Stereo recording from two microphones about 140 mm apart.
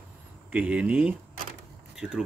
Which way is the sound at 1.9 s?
5° right (ahead or behind).